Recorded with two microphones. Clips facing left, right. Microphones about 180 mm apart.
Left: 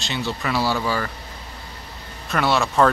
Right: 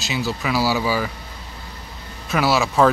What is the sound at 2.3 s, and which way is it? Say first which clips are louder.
Speech: right 2 dB; centre (ahead or behind).